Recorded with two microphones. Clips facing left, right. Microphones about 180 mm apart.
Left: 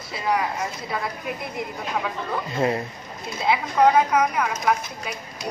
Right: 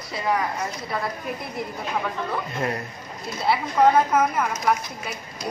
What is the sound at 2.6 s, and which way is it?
Speech, 15° left (ahead or behind).